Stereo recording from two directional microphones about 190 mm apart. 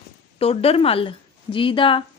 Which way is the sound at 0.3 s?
30° left (ahead or behind).